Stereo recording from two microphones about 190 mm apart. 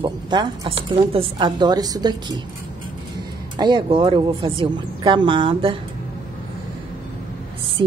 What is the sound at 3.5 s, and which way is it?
Speech, 20° right (ahead or behind).